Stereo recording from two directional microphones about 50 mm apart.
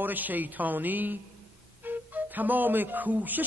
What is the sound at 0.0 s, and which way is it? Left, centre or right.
A man's voice, right.